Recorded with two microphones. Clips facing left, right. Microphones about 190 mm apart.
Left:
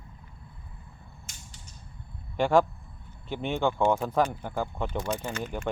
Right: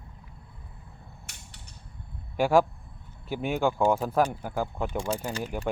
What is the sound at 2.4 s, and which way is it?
Speech, 5° right (ahead or behind).